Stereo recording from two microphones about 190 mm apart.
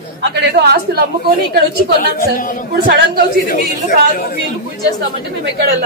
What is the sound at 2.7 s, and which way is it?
Speech, 55° right (ahead or behind).